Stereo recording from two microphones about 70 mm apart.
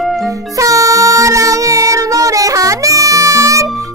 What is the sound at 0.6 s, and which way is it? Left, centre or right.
Music, right.